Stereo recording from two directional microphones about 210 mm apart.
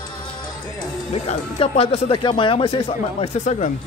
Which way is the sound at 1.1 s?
30° left (ahead or behind).